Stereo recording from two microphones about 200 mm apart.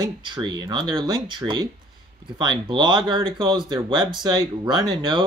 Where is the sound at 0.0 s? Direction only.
25° right (ahead or behind).